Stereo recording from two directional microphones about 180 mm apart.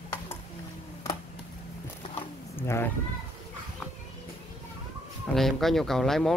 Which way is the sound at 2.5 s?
15° left (ahead or behind).